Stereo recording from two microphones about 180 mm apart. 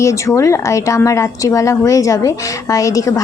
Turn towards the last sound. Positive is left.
turn(degrees=20)  # may be behind; listen again after turning